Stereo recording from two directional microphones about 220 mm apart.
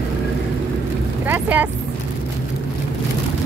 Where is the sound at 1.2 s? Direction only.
10° right (ahead or behind).